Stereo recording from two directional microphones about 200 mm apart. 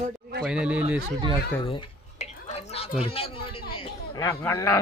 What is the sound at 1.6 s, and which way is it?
Speech, 25° left (ahead or behind).